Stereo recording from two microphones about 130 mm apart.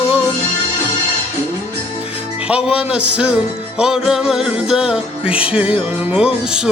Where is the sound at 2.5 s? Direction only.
10° right (ahead or behind).